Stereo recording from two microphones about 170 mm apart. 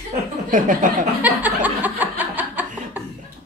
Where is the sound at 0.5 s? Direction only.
50° right (ahead or behind).